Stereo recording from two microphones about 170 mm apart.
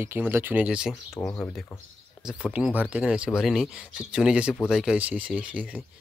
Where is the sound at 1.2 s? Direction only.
15° left (ahead or behind).